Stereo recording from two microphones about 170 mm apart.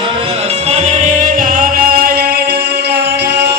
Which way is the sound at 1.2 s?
55° right (ahead or behind).